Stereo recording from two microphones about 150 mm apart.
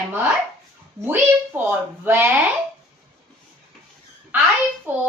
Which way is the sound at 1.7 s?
15° right (ahead or behind).